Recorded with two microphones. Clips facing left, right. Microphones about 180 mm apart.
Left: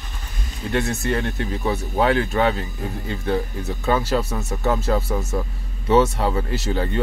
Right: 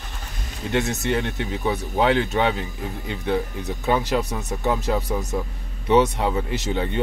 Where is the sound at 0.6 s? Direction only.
20° right (ahead or behind).